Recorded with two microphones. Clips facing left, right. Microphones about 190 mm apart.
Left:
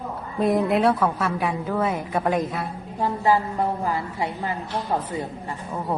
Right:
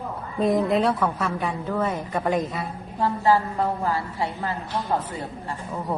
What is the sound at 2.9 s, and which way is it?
A woman's voice, 20° left (ahead or behind).